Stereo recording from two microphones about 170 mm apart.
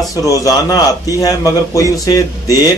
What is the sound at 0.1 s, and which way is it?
A man's voice, 20° left (ahead or behind).